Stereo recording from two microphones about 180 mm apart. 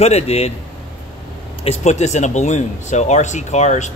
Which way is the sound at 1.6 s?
35° left (ahead or behind).